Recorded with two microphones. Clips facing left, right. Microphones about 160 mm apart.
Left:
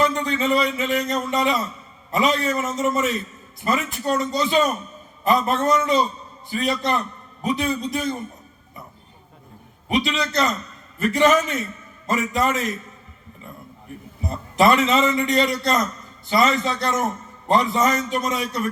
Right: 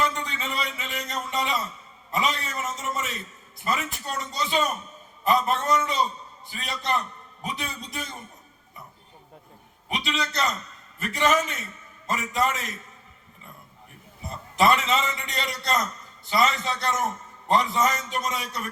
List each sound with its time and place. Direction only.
0.6 s a man's voice: 90° left
9.9 s a man's voice: 90° left
14.3 s a man's voice: 90° left